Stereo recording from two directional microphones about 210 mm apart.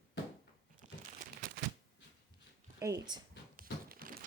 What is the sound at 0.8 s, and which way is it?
Crumpling, 35° right (ahead or behind).